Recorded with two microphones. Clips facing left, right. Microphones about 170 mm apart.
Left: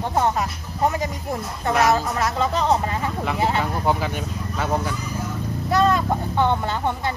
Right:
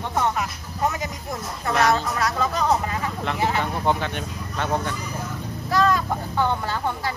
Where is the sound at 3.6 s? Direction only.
5° left (ahead or behind).